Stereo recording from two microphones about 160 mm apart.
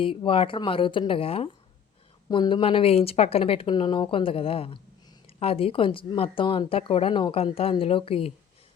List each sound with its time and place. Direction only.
0.0 s speech: 35° left (ahead or behind)